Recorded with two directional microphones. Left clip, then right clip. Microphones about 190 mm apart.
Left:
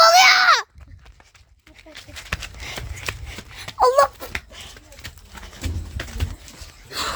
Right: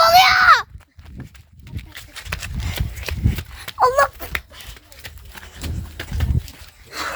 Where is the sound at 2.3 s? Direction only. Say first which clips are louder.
Even; 30° right (ahead or behind).